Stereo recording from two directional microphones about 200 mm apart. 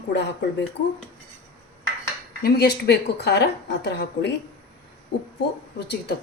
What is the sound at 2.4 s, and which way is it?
A woman's voice, 50° left (ahead or behind).